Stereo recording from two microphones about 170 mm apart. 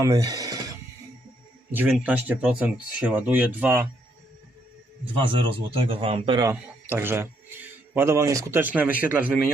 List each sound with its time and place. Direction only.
0.0 s a sound: 20° right (ahead or behind)
1.7 s speech: 10° right (ahead or behind)
5.2 s a man's voice: 30° right (ahead or behind)
6.5 s a man's voice: 10° right (ahead or behind)